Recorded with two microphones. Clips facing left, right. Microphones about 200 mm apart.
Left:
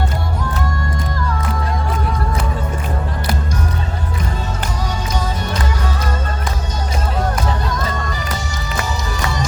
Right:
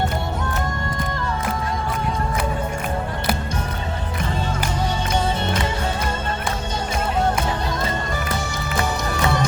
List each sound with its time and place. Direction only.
8.8 s music: 55° right (ahead or behind)